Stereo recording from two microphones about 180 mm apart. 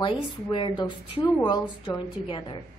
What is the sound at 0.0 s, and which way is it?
A woman's voice, 30° left (ahead or behind).